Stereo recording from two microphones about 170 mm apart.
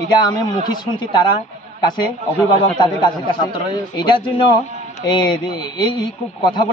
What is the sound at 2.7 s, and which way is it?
A man's voice, 25° left (ahead or behind).